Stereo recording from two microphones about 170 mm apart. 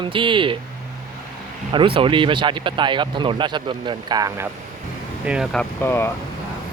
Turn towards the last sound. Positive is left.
turn(degrees=15)  # may be behind; listen again after turning